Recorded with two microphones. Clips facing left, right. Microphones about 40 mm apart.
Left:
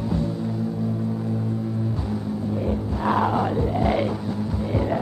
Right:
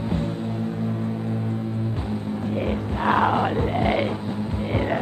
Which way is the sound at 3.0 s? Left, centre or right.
Right.